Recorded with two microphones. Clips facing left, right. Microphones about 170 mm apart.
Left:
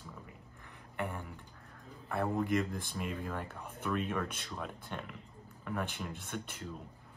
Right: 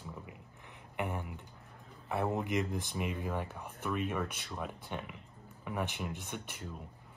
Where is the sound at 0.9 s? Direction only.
15° right (ahead or behind).